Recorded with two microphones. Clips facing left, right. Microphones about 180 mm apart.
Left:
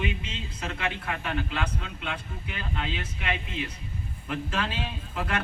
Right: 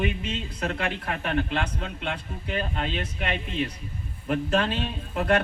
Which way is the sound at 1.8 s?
45° right (ahead or behind).